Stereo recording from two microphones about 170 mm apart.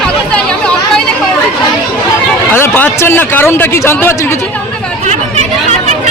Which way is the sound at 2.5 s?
15° left (ahead or behind).